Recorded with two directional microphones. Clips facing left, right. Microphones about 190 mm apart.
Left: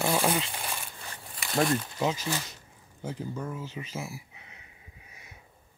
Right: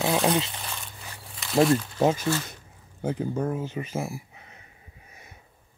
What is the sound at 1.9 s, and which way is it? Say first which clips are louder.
Speech: right 6 dB; 50° right (ahead or behind).